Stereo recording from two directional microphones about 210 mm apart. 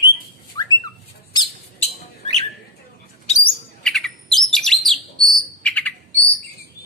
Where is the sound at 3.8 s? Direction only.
Centre (ahead or behind).